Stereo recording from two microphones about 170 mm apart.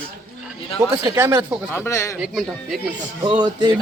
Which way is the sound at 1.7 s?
15° left (ahead or behind).